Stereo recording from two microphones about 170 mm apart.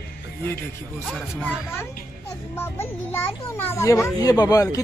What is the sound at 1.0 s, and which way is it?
Speech, 5° left (ahead or behind).